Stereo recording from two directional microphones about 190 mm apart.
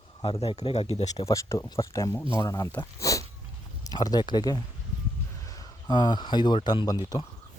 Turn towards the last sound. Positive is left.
turn(degrees=20)  # may be behind; listen again after turning